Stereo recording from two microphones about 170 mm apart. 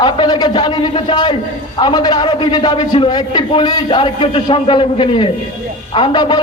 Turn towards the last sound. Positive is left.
turn(degrees=25)  # may be behind; listen again after turning